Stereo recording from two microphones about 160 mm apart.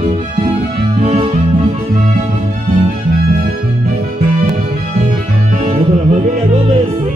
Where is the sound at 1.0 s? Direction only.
40° right (ahead or behind).